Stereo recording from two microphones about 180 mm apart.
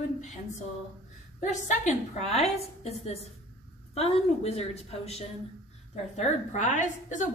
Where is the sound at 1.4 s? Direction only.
40° left (ahead or behind).